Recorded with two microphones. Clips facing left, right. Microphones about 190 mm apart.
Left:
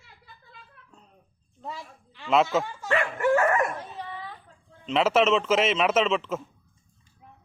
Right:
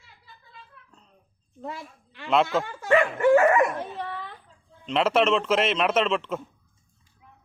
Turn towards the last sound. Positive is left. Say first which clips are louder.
# even
turn(degrees=0)  # may be behind; listen again after turning